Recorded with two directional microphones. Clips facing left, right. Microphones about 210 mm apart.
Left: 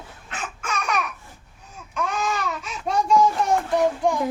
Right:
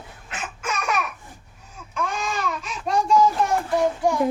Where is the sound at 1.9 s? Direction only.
Centre (ahead or behind).